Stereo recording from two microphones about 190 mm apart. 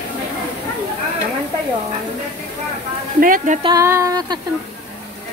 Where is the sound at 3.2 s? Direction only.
45° right (ahead or behind).